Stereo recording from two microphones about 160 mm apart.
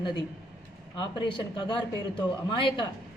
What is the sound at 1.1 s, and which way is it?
A woman's voice, 30° left (ahead or behind).